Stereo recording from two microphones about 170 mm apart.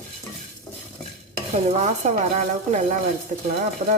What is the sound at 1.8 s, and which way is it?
Speech, 45° right (ahead or behind).